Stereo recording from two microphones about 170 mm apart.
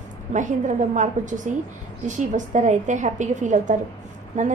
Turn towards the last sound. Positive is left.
turn(degrees=-45)  # may be behind; listen again after turning